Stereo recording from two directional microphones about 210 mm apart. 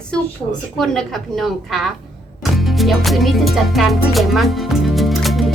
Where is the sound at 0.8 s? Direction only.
Centre (ahead or behind).